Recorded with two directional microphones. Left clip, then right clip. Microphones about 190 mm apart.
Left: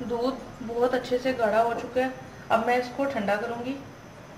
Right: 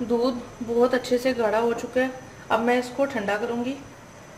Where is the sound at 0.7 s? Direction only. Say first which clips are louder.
Right 4 dB; 40° right (ahead or behind).